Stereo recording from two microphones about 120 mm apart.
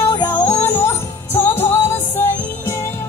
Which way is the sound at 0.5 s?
20° left (ahead or behind).